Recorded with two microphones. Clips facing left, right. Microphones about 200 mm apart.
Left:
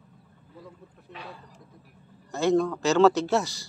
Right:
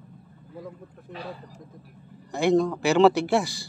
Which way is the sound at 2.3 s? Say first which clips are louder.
Right 2 dB; 15° right (ahead or behind).